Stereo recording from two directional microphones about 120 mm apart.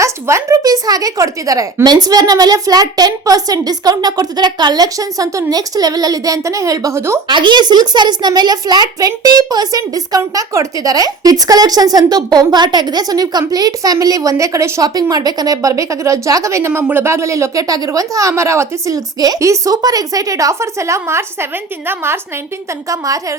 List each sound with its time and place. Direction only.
0.0 s a woman's voice: 25° right (ahead or behind)
7.3 s a woman's voice: 40° right (ahead or behind)